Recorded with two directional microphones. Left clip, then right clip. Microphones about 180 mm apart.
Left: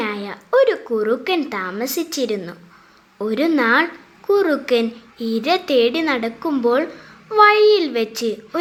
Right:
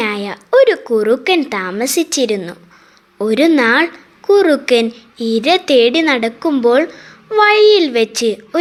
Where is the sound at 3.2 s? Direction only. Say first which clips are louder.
Right 6 dB; 35° right (ahead or behind).